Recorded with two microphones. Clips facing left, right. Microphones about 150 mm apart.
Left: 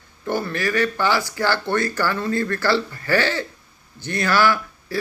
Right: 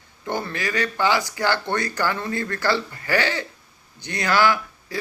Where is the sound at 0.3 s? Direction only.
20° right (ahead or behind).